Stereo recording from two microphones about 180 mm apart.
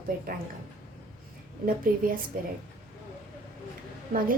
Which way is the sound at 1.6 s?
50° right (ahead or behind).